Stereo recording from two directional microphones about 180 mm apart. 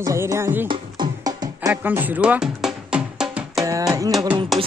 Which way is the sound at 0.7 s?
25° right (ahead or behind).